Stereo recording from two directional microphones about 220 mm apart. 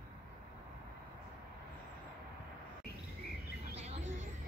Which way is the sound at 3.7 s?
30° right (ahead or behind).